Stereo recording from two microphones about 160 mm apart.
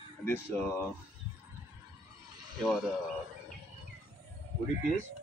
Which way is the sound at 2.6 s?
Centre (ahead or behind).